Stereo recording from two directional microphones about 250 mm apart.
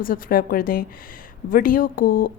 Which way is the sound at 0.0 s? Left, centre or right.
Left.